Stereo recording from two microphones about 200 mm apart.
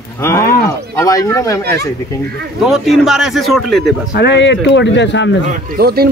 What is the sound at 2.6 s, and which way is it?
A man's voice, centre (ahead or behind).